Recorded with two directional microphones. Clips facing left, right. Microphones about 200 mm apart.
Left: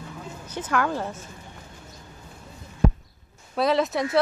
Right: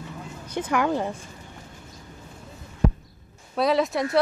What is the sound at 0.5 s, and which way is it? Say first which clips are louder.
Speech: right 2 dB; 10° right (ahead or behind).